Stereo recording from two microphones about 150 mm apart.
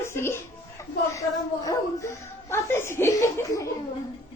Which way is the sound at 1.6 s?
20° left (ahead or behind).